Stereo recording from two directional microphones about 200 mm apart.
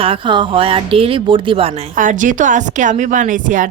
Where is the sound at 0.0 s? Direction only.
25° right (ahead or behind).